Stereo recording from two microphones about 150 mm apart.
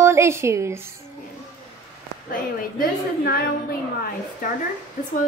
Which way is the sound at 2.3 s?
80° left.